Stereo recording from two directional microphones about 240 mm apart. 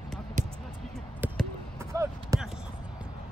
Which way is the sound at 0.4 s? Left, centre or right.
Right.